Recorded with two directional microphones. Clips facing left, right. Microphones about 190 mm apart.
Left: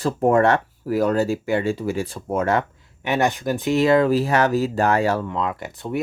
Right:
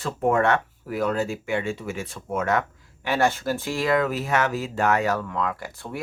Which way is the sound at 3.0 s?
20° left (ahead or behind).